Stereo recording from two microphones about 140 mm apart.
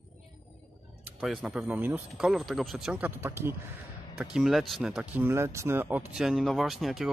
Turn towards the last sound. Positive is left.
turn(degrees=0)  # may be behind; listen again after turning